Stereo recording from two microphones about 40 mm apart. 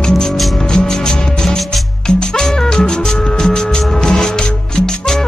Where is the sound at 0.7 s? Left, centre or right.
Centre.